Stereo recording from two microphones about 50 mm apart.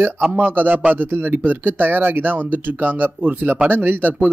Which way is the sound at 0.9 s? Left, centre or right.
Right.